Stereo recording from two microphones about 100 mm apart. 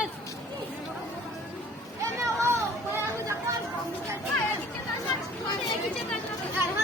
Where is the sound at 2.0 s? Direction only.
30° right (ahead or behind).